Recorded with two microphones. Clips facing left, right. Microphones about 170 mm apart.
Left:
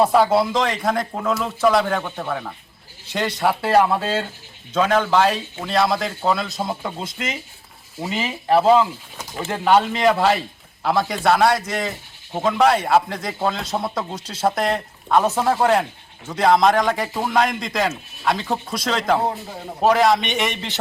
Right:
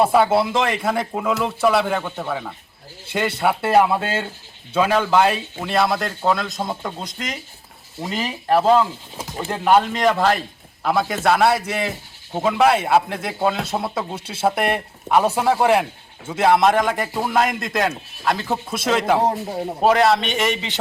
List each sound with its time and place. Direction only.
0.0 s speech: centre (ahead or behind)
9.1 s pigeon: 30° right (ahead or behind)
9.5 s speech: centre (ahead or behind)
19.2 s a man's voice: 40° right (ahead or behind)
19.8 s speech: centre (ahead or behind)